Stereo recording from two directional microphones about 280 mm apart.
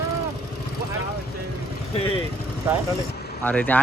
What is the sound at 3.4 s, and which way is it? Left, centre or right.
Speech, centre.